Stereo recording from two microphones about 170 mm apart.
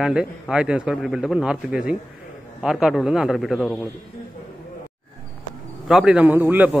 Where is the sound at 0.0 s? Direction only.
5° right (ahead or behind).